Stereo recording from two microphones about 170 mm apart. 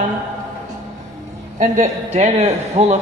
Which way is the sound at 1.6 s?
45° right (ahead or behind).